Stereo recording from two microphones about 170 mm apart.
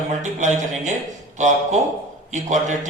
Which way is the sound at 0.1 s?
45° right (ahead or behind).